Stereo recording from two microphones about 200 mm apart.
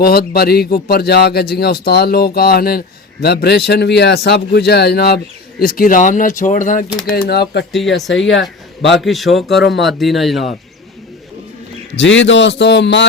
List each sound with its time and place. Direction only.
0.0 s speech: 50° left (ahead or behind)
7.2 s speech: 55° left (ahead or behind)
7.6 s speech: centre (ahead or behind)
8.1 s speech: 70° left (ahead or behind)
9.0 s speech: centre (ahead or behind)
11.9 s speech: 65° left (ahead or behind)